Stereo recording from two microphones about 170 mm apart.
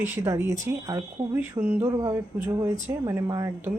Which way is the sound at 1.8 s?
25° right (ahead or behind).